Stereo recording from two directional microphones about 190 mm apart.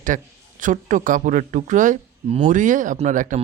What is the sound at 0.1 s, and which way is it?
Speech, 45° right (ahead or behind).